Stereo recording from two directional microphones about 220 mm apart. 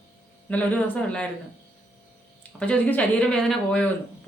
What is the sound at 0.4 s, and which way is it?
Speech, 5° left (ahead or behind).